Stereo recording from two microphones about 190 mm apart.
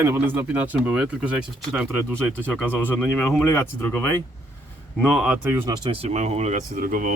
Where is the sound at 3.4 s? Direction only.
15° left (ahead or behind).